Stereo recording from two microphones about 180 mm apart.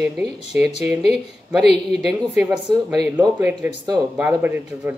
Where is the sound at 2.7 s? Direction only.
20° right (ahead or behind).